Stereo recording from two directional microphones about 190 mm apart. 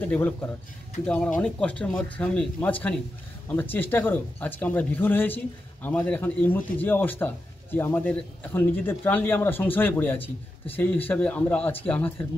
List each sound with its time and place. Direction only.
0.0 s speech: 10° left (ahead or behind)